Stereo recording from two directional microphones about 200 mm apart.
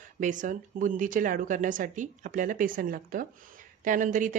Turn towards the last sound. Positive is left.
turn(degrees=-40)  # may be behind; listen again after turning